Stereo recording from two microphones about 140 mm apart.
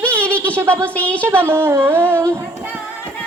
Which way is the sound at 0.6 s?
20° right (ahead or behind).